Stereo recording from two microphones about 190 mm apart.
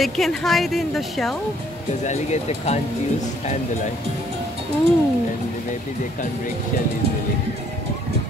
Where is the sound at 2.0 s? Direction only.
35° left (ahead or behind).